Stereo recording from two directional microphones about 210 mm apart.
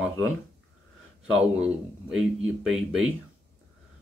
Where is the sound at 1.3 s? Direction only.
5° right (ahead or behind).